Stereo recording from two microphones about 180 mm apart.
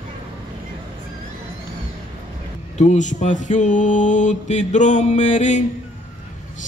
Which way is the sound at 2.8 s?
40° left (ahead or behind).